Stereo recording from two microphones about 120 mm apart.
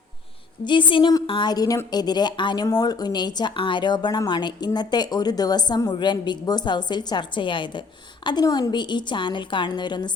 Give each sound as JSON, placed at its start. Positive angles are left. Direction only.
{"t": 0.6, "sound": "a woman's voice", "side_deg": 40}